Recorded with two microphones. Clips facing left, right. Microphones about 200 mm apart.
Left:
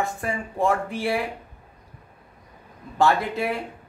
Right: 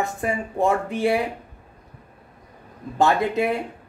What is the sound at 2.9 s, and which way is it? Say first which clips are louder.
Speech: right 2 dB; 20° right (ahead or behind).